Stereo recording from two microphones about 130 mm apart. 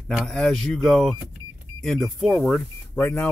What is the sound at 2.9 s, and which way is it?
Speech, 15° left (ahead or behind).